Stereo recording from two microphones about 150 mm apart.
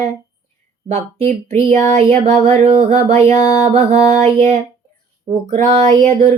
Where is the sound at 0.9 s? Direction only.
45° right (ahead or behind).